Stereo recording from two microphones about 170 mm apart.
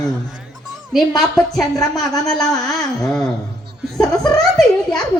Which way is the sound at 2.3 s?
Centre (ahead or behind).